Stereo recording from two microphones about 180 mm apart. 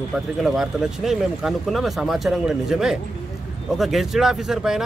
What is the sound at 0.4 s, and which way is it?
Speech, centre (ahead or behind).